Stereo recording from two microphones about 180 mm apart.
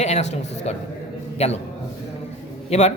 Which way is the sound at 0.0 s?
40° left (ahead or behind).